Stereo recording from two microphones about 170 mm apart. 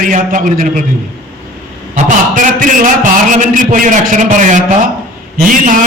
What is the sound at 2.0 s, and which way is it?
A man's voice, 50° right (ahead or behind).